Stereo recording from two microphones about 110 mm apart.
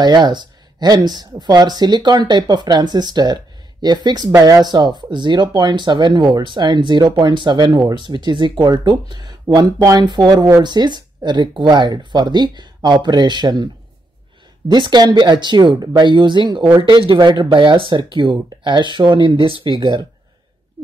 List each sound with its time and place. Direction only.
0.0 s speech: 40° right (ahead or behind)
4.6 s speech: 40° right (ahead or behind)
14.7 s speech: 40° right (ahead or behind)
19.3 s speech: 40° left (ahead or behind)
19.6 s speech: 45° right (ahead or behind)